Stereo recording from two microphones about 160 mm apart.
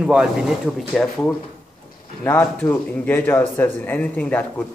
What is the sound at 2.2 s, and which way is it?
Speech, 15° left (ahead or behind).